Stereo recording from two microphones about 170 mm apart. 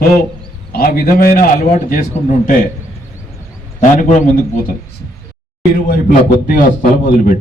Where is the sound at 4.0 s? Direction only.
45° left (ahead or behind).